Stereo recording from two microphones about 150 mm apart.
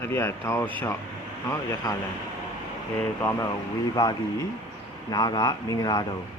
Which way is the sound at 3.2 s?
15° left (ahead or behind).